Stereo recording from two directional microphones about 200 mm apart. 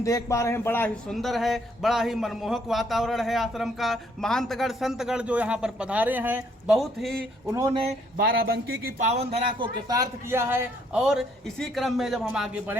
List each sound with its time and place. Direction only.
0.0 s a man's voice: 15° left (ahead or behind)
1.1 s a man's voice: centre (ahead or behind)
6.7 s a man's voice: centre (ahead or behind)
7.5 s speech: 15° right (ahead or behind)
8.2 s speech: 55° right (ahead or behind)
9.1 s a man's voice: 20° right (ahead or behind)